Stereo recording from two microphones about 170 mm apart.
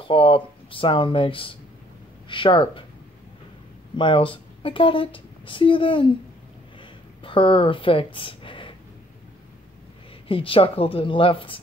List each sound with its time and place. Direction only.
0.0 s speech: 30° left (ahead or behind)
3.9 s a woman's voice: 30° left (ahead or behind)
7.2 s speech: 30° left (ahead or behind)
10.2 s speech: 30° left (ahead or behind)